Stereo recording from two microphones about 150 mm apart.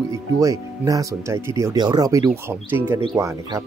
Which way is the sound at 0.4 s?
20° right (ahead or behind).